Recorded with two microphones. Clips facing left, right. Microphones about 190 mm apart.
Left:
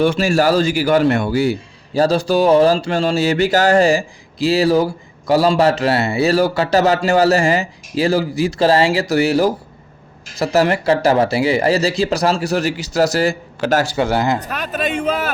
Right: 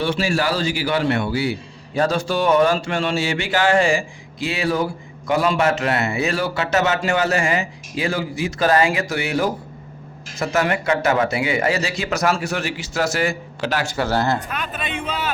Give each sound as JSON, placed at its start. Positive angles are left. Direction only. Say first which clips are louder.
{"t": 0.0, "sound": "a man's voice", "louder": "left 6 dB", "side_deg": 45}
{"t": 13.9, "sound": "speech", "louder": "left 3 dB", "side_deg": 15}
{"t": 14.3, "sound": "a man's voice", "louder": "left 4 dB", "side_deg": 40}